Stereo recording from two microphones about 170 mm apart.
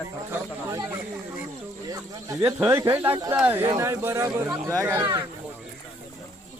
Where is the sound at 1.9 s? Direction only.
20° right (ahead or behind).